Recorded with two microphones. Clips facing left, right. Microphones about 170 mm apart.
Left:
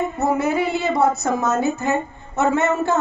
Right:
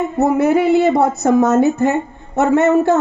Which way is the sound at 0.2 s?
60° right (ahead or behind).